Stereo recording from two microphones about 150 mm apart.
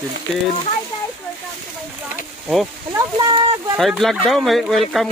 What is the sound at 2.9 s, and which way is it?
Speech, 25° right (ahead or behind).